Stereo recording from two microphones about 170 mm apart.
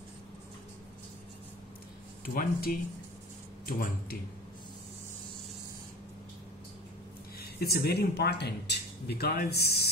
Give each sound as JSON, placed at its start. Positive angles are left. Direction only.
{"t": 2.2, "sound": "speech", "side_deg": 60}
{"t": 7.3, "sound": "speech", "side_deg": 65}